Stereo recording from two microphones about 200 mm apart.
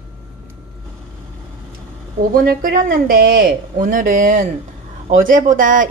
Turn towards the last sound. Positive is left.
turn(degrees=-40)  # may be behind; listen again after turning